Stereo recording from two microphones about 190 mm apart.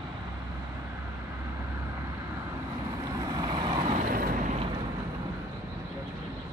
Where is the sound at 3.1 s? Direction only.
20° right (ahead or behind).